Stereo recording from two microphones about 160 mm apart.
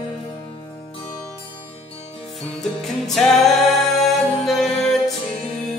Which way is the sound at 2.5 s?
Centre (ahead or behind).